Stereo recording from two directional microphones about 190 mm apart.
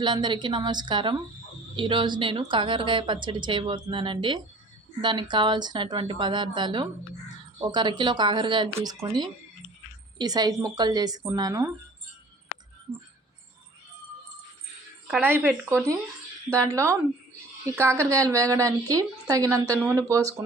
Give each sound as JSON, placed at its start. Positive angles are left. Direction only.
{"t": 0.0, "sound": "a woman's voice", "side_deg": -25}
{"t": 15.1, "sound": "a woman's voice", "side_deg": -5}